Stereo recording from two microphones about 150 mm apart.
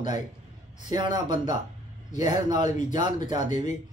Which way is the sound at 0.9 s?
30° right (ahead or behind).